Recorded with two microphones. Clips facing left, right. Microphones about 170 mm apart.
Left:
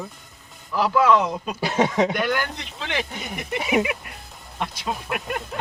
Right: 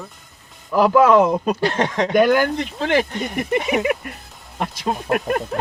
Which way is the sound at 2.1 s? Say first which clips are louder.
Right 9 dB; 45° right (ahead or behind).